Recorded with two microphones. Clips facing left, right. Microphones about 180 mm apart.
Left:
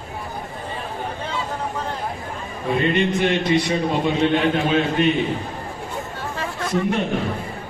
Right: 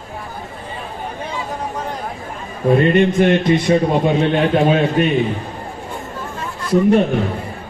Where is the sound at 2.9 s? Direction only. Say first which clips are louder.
Right 6 dB; 50° right (ahead or behind).